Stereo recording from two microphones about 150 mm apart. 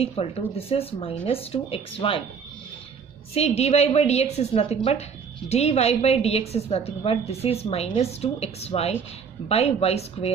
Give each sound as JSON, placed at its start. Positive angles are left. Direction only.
{"t": 0.0, "sound": "speech", "side_deg": 40}
{"t": 3.3, "sound": "a woman's voice", "side_deg": 45}